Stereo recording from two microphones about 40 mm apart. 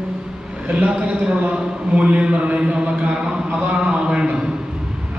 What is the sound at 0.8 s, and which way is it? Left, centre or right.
A man's voice, right.